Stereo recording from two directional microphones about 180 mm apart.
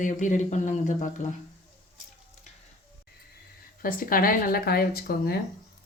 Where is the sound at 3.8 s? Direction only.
55° left (ahead or behind).